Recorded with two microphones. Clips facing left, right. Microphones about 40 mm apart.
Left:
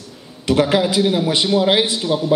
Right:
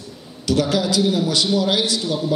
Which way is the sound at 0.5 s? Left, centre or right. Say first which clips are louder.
Left 3 dB; left.